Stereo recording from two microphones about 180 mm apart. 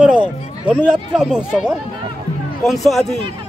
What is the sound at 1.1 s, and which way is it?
Speech, 5° right (ahead or behind).